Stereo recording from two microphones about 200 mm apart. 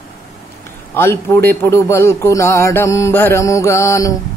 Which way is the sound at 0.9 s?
10° left (ahead or behind).